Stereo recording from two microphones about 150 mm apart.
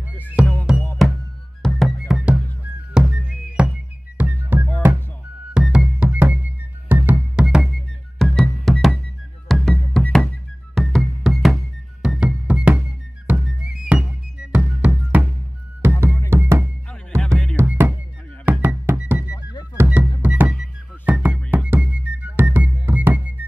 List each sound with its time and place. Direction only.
0.4 s music: 5° right (ahead or behind)
8.2 s music: 5° left (ahead or behind)